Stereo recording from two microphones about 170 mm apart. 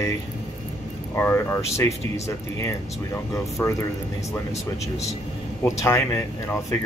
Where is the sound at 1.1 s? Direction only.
15° left (ahead or behind).